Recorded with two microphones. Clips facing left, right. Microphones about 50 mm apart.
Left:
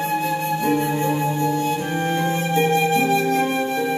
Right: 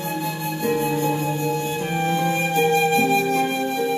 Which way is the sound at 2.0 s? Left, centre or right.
Left.